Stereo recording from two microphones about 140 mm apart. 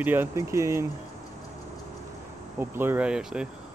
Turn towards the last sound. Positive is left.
turn(degrees=-5)  # may be behind; listen again after turning